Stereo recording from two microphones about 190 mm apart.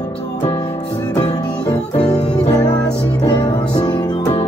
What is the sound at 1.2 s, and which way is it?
Music, 20° left (ahead or behind).